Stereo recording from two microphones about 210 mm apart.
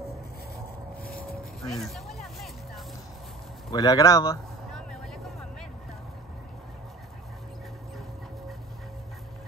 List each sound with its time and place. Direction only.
1.6 s music: centre (ahead or behind)
3.7 s speech: 15° left (ahead or behind)
4.7 s vehicle: centre (ahead or behind)